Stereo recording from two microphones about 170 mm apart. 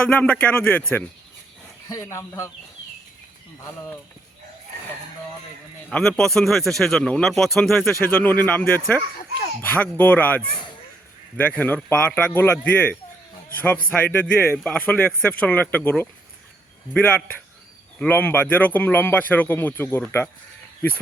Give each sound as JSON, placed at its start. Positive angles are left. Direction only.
{"t": 0.1, "sound": "a man's voice", "side_deg": 10}
{"t": 3.6, "sound": "a man's voice", "side_deg": 15}
{"t": 5.9, "sound": "a man's voice", "side_deg": 5}
{"t": 7.9, "sound": "a man's voice", "side_deg": 15}